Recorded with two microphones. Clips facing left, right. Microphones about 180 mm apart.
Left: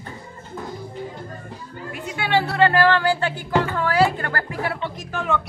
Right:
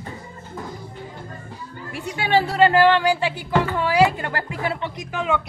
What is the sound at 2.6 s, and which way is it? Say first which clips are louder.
Speech: right 2 dB; 15° right (ahead or behind).